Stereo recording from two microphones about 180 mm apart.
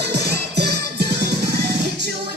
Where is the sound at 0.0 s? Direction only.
65° right (ahead or behind).